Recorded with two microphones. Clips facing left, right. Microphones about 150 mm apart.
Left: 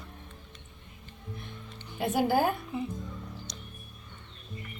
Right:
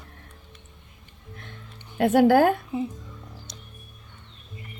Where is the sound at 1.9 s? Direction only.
90° right.